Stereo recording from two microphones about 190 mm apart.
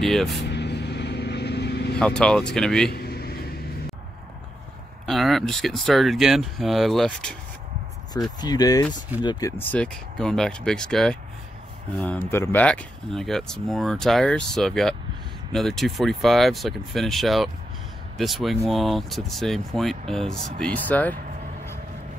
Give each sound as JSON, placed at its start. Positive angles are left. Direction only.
{"t": 0.0, "sound": "speech", "side_deg": 0}
{"t": 0.5, "sound": "vehicle", "side_deg": 60}
{"t": 2.0, "sound": "speech", "side_deg": 5}
{"t": 2.9, "sound": "vehicle", "side_deg": 55}
{"t": 5.0, "sound": "speech", "side_deg": 0}
{"t": 8.4, "sound": "speech", "side_deg": 20}